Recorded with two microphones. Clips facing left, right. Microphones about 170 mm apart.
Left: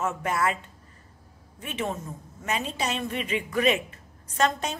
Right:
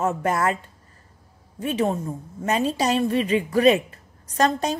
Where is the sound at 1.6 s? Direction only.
35° right (ahead or behind).